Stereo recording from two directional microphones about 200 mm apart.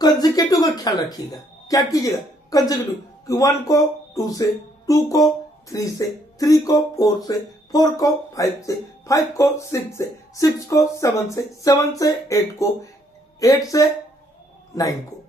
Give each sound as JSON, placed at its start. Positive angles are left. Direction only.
{"t": 0.0, "sound": "a man's voice", "side_deg": 20}